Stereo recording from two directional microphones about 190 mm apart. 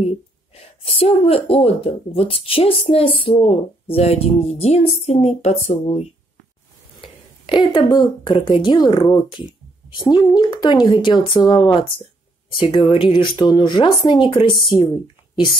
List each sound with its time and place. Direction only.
0.8 s speech: 30° left (ahead or behind)